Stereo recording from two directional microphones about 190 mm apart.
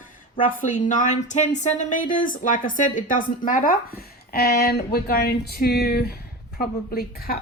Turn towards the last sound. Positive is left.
turn(degrees=50)  # may be behind; listen again after turning